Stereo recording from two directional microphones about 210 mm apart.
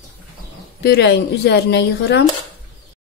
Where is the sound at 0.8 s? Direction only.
50° left (ahead or behind).